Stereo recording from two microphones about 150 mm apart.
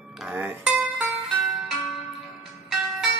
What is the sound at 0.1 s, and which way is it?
Music, 5° right (ahead or behind).